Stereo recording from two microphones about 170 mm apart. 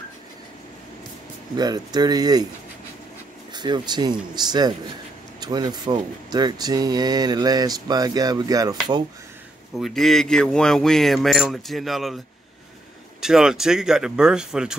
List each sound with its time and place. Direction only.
1.6 s speech: 25° right (ahead or behind)
3.5 s speech: 25° right (ahead or behind)
9.8 s speech: centre (ahead or behind)
13.2 s speech: 5° right (ahead or behind)